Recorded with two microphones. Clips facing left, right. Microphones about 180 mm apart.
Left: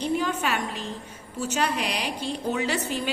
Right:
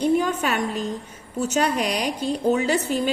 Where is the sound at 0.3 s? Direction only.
45° right (ahead or behind).